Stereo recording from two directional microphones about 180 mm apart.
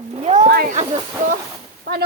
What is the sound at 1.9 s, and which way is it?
Speech, 60° right (ahead or behind).